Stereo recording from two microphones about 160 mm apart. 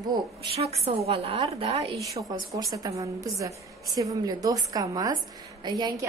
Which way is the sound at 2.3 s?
25° right (ahead or behind).